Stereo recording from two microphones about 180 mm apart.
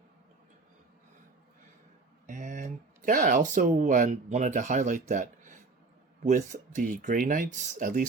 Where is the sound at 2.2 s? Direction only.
40° right (ahead or behind).